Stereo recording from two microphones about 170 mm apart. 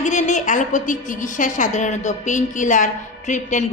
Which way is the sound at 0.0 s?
45° left (ahead or behind).